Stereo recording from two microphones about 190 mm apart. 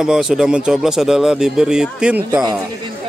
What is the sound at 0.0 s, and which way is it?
Speech, 5° right (ahead or behind).